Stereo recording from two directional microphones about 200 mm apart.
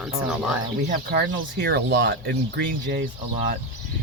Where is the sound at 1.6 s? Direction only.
55° right (ahead or behind).